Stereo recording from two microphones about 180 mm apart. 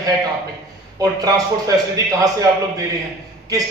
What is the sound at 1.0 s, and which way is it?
A man's voice, 20° right (ahead or behind).